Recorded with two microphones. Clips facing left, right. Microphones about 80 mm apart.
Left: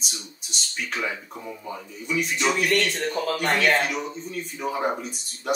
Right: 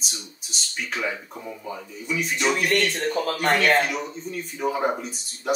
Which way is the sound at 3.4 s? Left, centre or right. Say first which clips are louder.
Right 2 dB; right.